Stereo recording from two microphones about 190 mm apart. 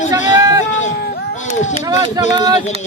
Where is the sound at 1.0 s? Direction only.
55° left (ahead or behind).